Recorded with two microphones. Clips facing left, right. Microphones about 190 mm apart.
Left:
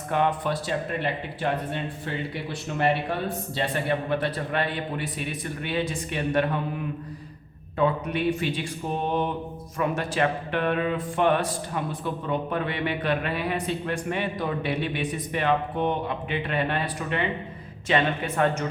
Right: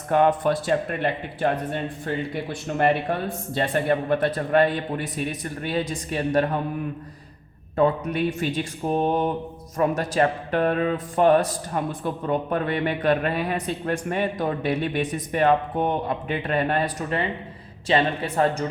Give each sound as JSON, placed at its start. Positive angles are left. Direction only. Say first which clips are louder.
{"t": 0.1, "sound": "a man's voice", "louder": "right 5 dB", "side_deg": -45}
{"t": 3.5, "sound": "a man's voice", "louder": "right 5 dB", "side_deg": -45}
{"t": 7.8, "sound": "a man's voice", "louder": "right 3 dB", "side_deg": -45}